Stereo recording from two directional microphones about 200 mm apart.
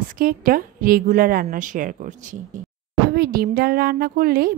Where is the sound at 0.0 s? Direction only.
45° right (ahead or behind).